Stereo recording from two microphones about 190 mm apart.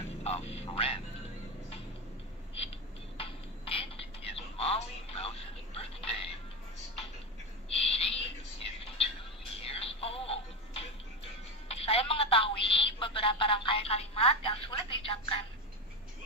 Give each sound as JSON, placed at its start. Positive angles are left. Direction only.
{"t": 0.2, "sound": "speech", "side_deg": 35}
{"t": 3.2, "sound": "a sound", "side_deg": 30}
{"t": 7.7, "sound": "owl", "side_deg": 30}
{"t": 9.7, "sound": "music", "side_deg": 30}
{"t": 11.7, "sound": "telephone", "side_deg": 30}